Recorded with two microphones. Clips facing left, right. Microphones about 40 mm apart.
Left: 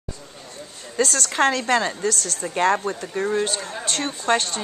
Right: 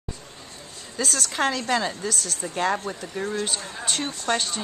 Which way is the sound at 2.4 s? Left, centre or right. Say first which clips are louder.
Left 5 dB; centre.